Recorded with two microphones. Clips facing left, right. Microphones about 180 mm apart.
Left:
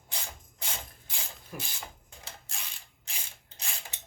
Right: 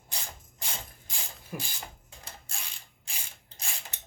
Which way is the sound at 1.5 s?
5° right (ahead or behind).